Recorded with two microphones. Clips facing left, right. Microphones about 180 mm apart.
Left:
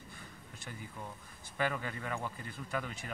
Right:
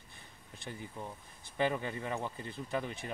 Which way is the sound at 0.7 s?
25° right (ahead or behind).